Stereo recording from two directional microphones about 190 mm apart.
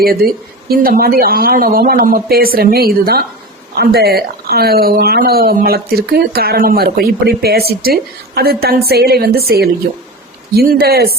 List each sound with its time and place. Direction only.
0.0 s a woman's voice: 50° right (ahead or behind)